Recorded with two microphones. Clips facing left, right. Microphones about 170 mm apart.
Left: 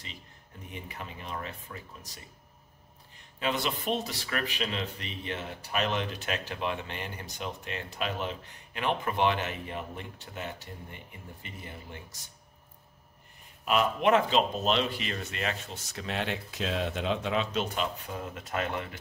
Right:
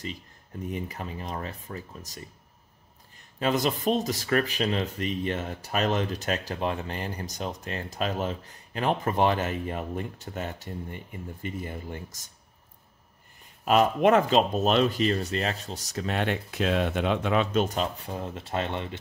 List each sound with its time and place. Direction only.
0.8 s speech: 40° right (ahead or behind)
3.3 s speech: 40° right (ahead or behind)
13.7 s speech: 45° right (ahead or behind); by 18.9 s 25° right (ahead or behind)